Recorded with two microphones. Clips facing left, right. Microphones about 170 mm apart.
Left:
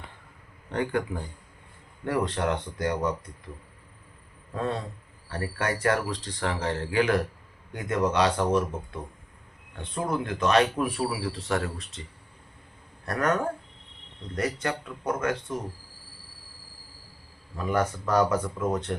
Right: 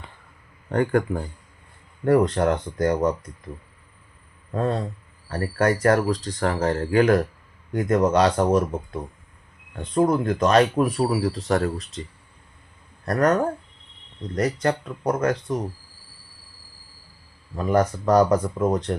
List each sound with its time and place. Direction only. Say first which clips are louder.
0.7 s speech: right 7 dB; 50° right (ahead or behind)
4.5 s speech: right 6 dB; 40° right (ahead or behind)
13.1 s speech: right 6 dB; 40° right (ahead or behind)
17.6 s speech: right 6 dB; 40° right (ahead or behind)